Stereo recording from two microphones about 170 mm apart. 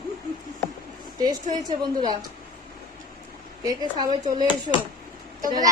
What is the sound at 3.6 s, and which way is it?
Speech, 20° right (ahead or behind).